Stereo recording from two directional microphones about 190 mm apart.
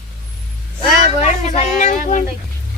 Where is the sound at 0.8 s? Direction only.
35° left (ahead or behind).